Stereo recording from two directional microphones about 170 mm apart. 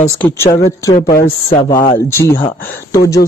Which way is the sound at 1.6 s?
25° left (ahead or behind).